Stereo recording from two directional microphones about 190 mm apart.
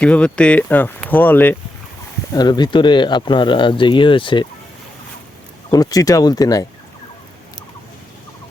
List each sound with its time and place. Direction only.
0.0 s speech: 5° left (ahead or behind)
2.3 s speech: 20° left (ahead or behind)
5.7 s speech: 20° left (ahead or behind)